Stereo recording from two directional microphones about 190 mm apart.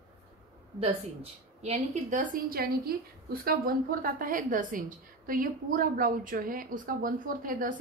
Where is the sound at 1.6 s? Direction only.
35° right (ahead or behind).